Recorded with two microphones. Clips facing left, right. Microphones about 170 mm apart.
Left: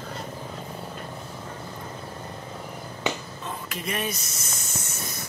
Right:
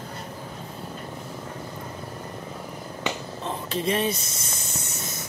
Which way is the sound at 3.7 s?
30° right (ahead or behind).